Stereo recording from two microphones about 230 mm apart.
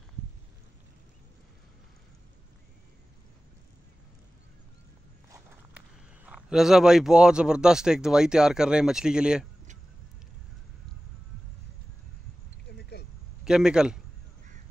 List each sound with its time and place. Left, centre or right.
6.2 s speech: centre
12.6 s a sound: left
13.4 s a man's voice: centre